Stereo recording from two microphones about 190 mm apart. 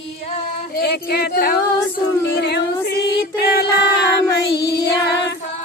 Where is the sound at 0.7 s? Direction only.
55° left (ahead or behind).